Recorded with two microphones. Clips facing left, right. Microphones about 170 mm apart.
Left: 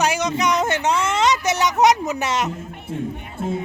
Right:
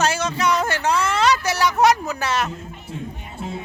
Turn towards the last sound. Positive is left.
turn(degrees=50)  # may be behind; listen again after turning